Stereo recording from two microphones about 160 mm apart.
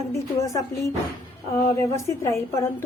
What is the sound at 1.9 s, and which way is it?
Speech, 20° left (ahead or behind).